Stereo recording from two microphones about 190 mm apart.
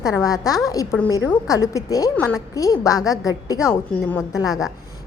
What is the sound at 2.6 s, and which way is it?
A woman's voice, 15° left (ahead or behind).